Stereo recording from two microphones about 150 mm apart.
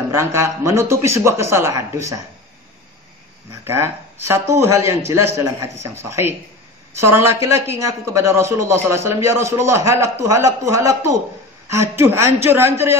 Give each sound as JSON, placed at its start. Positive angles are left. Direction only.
{"t": 0.1, "sound": "a man's voice", "side_deg": -20}
{"t": 3.6, "sound": "a man's voice", "side_deg": -15}